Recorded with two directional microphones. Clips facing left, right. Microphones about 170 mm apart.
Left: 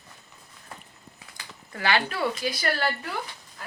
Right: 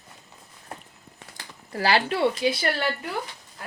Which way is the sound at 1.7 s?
35° right (ahead or behind).